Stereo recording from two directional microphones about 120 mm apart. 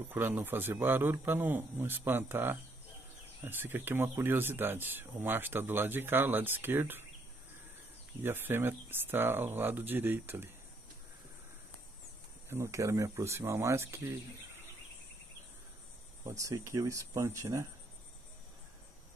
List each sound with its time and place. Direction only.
0.1 s speech: 15° right (ahead or behind)
8.2 s speech: 20° right (ahead or behind)
12.4 s speech: 20° right (ahead or behind)
16.3 s speech: 25° right (ahead or behind)